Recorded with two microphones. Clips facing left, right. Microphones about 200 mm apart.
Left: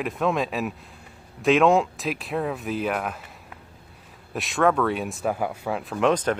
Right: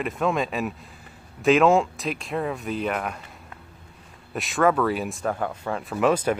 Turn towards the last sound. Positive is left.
turn(degrees=-5)  # may be behind; listen again after turning